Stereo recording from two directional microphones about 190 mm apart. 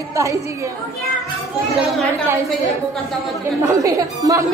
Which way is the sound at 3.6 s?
15° right (ahead or behind).